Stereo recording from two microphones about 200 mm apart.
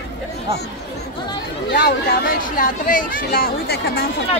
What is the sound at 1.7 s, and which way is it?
Speech, 50° left (ahead or behind).